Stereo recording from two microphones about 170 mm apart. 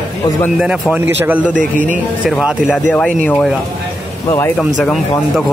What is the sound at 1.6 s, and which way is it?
Speech, 50° right (ahead or behind).